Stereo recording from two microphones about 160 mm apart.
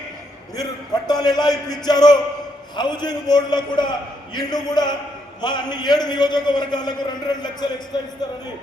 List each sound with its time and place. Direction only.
0.5 s a man's voice: 25° left (ahead or behind)